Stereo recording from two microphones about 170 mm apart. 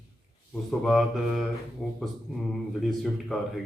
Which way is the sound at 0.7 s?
Centre (ahead or behind).